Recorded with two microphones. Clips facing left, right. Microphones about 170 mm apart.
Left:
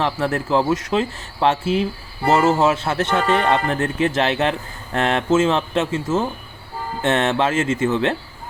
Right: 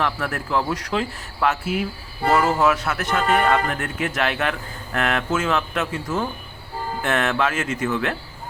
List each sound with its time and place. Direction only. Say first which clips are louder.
0.0 s speech: left 4 dB; 25° left (ahead or behind)